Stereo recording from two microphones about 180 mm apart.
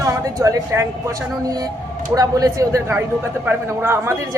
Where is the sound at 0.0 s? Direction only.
20° right (ahead or behind).